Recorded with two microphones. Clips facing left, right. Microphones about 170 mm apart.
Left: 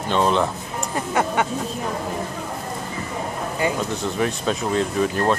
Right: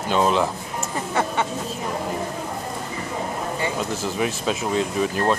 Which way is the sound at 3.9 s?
Centre (ahead or behind).